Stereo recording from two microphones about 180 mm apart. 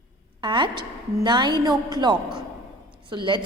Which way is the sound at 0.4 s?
25° right (ahead or behind).